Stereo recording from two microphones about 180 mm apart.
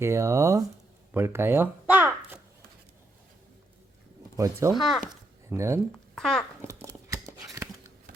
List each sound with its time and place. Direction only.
0.0 s speech: 15° right (ahead or behind)
1.1 s a sound: 15° right (ahead or behind)
4.4 s speech: 20° right (ahead or behind)
4.7 s speech: centre (ahead or behind)
5.5 s speech: 15° right (ahead or behind)
6.1 s speech: 5° left (ahead or behind)
6.6 s a sound: 15° right (ahead or behind)